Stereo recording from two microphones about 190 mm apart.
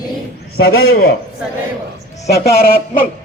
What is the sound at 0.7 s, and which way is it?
Speech, 90° left.